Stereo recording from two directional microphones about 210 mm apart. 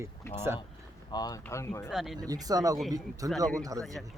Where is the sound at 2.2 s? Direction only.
15° right (ahead or behind).